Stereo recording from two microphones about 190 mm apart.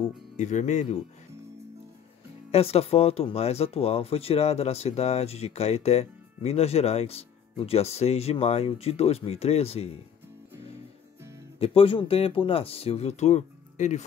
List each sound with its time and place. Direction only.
0.4 s speech: 40° left (ahead or behind)
2.5 s speech: 30° left (ahead or behind)
11.6 s speech: 30° left (ahead or behind)